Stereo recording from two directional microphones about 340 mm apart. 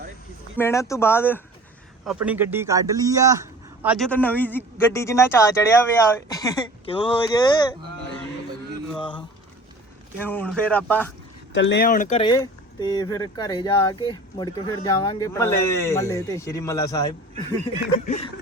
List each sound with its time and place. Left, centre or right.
0.5 s speech: centre
2.0 s a man's voice: centre
9.0 s a man's voice: centre
11.5 s speech: left